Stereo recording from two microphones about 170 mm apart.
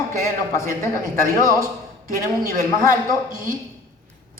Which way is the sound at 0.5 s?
15° left (ahead or behind).